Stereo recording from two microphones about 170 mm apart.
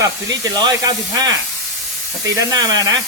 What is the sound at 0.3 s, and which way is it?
Speech, 20° right (ahead or behind).